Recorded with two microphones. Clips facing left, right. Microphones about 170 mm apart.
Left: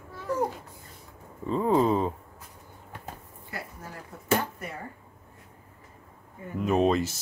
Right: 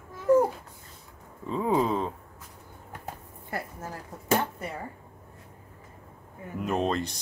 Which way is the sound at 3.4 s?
50° right (ahead or behind).